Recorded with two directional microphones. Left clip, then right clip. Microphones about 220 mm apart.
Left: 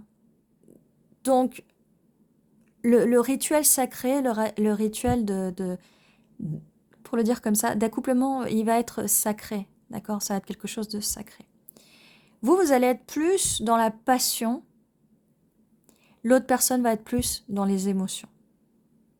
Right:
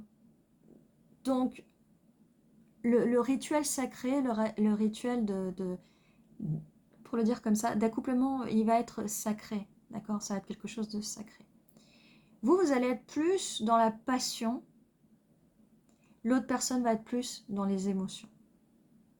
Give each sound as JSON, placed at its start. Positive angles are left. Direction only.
{"t": 1.2, "sound": "speech", "side_deg": 50}
{"t": 2.8, "sound": "speech", "side_deg": 50}
{"t": 7.0, "sound": "speech", "side_deg": 55}
{"t": 16.2, "sound": "speech", "side_deg": 55}